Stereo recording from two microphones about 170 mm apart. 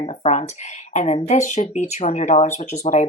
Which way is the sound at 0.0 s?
40° left (ahead or behind).